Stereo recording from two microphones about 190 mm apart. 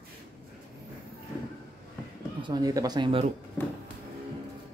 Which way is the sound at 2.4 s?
20° right (ahead or behind).